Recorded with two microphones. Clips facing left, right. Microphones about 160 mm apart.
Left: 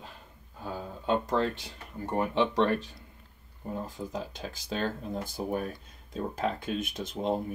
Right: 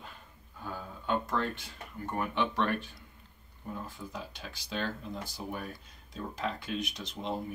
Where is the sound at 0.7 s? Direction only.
30° left (ahead or behind).